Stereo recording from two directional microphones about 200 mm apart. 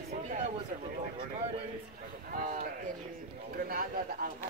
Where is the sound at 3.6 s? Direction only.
45° right (ahead or behind).